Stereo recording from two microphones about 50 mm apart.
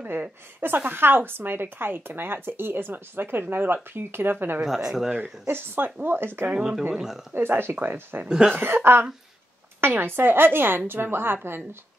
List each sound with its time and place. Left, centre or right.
0.0 s a woman's voice: right
4.6 s speech: centre
6.0 s a woman's voice: right
6.9 s speech: centre
7.3 s a woman's voice: right